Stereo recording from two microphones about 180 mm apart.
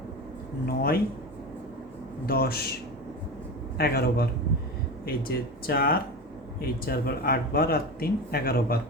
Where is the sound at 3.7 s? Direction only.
60° left (ahead or behind).